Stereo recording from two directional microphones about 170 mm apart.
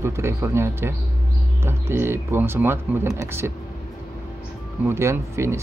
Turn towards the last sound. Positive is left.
turn(degrees=-15)  # may be behind; listen again after turning